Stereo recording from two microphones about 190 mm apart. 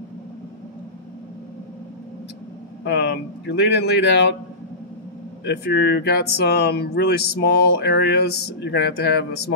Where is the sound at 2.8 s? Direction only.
60° left (ahead or behind).